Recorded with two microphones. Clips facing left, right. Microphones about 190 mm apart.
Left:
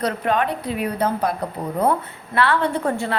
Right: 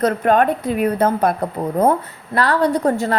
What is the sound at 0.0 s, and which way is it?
A woman's voice, 45° right (ahead or behind).